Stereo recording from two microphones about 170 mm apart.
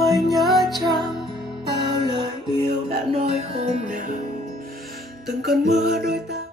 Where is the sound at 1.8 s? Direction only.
25° right (ahead or behind).